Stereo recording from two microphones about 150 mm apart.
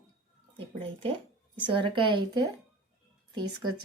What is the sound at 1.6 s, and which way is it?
Speech, 35° right (ahead or behind).